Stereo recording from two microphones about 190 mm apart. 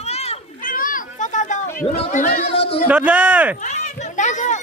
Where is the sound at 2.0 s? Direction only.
40° left (ahead or behind).